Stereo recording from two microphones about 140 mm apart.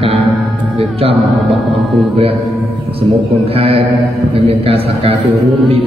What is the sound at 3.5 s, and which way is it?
A man's voice, 45° right (ahead or behind).